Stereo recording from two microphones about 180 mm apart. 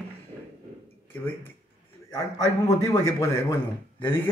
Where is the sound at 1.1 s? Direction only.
10° left (ahead or behind).